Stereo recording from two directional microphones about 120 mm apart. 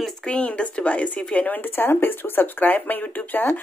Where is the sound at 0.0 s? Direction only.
5° left (ahead or behind).